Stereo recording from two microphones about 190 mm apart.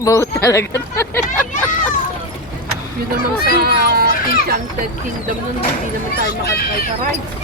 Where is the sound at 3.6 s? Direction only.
55° right (ahead or behind).